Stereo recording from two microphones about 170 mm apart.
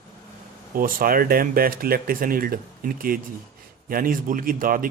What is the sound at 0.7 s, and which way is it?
A man's voice, 55° right (ahead or behind).